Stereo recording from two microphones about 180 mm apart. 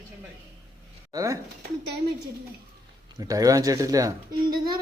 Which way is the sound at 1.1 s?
15° right (ahead or behind).